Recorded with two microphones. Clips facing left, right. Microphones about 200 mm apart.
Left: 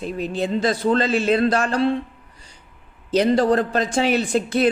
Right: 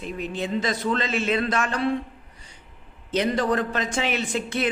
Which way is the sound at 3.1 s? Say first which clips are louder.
Left 6 dB; 35° left (ahead or behind).